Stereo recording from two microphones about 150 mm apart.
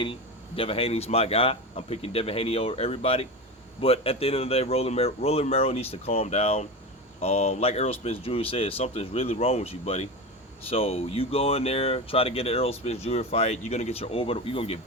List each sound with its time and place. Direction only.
0.0 s speech: 35° left (ahead or behind)